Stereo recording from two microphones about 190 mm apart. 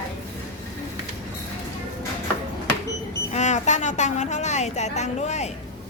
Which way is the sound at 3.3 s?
40° left (ahead or behind).